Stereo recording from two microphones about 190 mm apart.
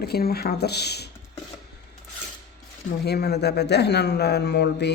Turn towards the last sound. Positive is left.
turn(degrees=60)  # may be behind; listen again after turning